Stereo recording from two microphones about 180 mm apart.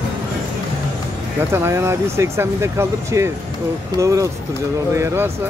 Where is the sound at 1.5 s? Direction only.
15° right (ahead or behind).